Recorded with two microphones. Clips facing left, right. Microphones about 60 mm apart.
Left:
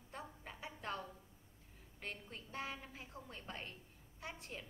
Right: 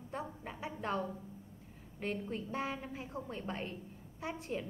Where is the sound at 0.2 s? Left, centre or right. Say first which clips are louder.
Right 8 dB; right.